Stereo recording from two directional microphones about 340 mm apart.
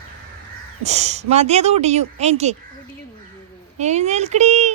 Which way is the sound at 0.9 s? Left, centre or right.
Centre.